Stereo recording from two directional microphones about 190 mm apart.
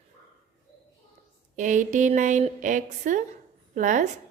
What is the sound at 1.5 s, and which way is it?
A woman's voice, 40° right (ahead or behind).